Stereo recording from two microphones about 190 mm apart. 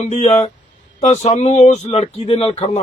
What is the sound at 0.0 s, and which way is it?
Speech, 35° left (ahead or behind).